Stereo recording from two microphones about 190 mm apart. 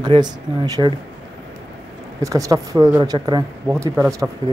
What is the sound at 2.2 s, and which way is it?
A woman's voice, 15° right (ahead or behind).